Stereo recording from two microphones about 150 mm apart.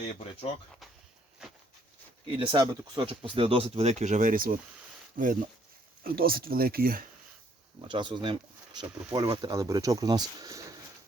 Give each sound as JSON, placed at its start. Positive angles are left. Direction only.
{"t": 2.3, "sound": "speech", "side_deg": -35}
{"t": 6.0, "sound": "speech", "side_deg": -80}
{"t": 7.8, "sound": "speech", "side_deg": -35}